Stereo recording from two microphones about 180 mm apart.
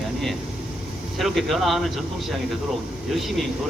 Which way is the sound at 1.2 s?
Centre (ahead or behind).